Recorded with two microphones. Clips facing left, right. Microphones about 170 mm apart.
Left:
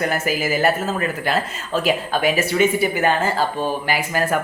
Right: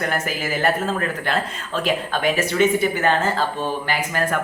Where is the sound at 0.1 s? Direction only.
5° left (ahead or behind).